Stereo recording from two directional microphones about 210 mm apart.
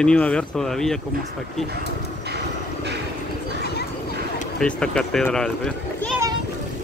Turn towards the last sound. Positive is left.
turn(degrees=5)  # may be behind; listen again after turning